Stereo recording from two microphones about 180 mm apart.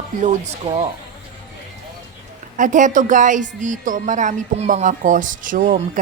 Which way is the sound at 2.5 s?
45° right (ahead or behind).